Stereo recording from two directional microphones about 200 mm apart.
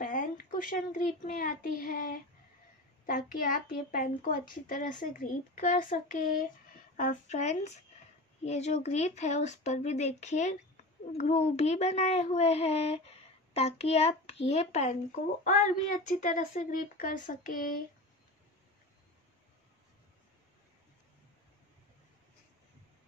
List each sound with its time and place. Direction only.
0.0 s a woman's voice: 45° left (ahead or behind)
16.2 s a child's voice: 40° left (ahead or behind)